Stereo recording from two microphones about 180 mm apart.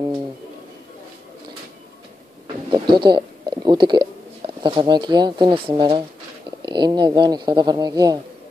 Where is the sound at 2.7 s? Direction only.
25° right (ahead or behind).